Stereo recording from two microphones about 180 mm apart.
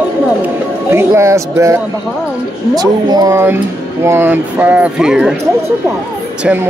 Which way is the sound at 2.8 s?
20° right (ahead or behind).